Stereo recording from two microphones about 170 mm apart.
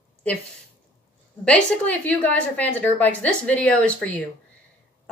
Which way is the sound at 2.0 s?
10° left (ahead or behind).